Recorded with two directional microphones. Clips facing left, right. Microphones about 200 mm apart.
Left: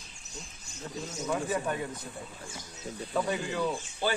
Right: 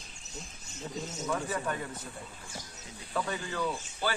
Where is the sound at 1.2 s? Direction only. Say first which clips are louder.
Left 3 dB; 20° left (ahead or behind).